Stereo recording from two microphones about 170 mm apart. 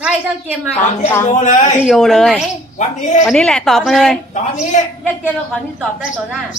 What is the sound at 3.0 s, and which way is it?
Speech, 45° left (ahead or behind).